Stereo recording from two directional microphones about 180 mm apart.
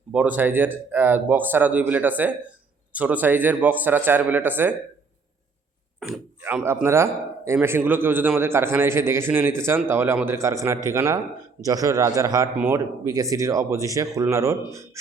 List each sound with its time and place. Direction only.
0.1 s speech: 10° right (ahead or behind)
6.0 s a man's voice: 5° right (ahead or behind)